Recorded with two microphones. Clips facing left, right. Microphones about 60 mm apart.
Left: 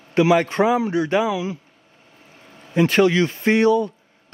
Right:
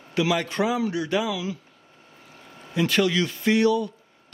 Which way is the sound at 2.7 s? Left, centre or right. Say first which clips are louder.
Left 6 dB; left.